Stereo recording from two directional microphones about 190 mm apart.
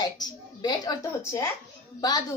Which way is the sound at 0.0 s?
20° left (ahead or behind).